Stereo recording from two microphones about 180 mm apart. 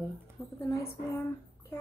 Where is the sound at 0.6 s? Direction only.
15° left (ahead or behind).